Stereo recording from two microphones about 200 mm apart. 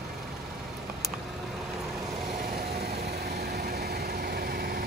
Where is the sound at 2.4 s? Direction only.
50° right (ahead or behind).